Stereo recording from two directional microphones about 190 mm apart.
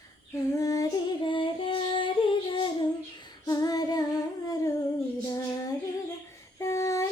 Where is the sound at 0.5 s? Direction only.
15° left (ahead or behind).